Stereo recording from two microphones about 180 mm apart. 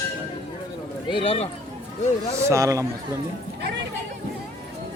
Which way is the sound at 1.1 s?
30° left (ahead or behind).